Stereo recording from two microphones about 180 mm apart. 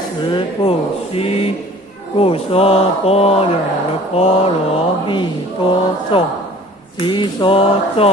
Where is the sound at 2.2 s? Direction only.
30° left (ahead or behind).